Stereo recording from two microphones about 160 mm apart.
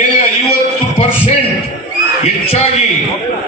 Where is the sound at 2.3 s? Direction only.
45° left (ahead or behind).